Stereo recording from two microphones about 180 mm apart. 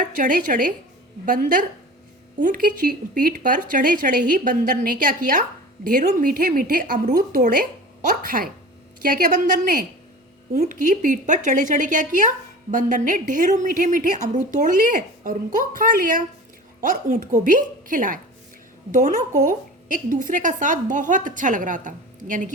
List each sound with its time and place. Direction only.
0.0 s a woman's voice: 45° right (ahead or behind)